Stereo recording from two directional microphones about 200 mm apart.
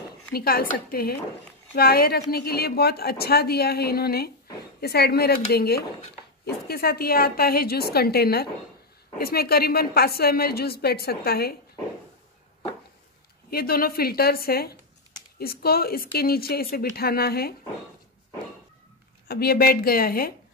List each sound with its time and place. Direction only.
0.3 s a woman's voice: 50° left (ahead or behind)
13.5 s a woman's voice: 50° left (ahead or behind)
19.2 s a woman's voice: 50° left (ahead or behind)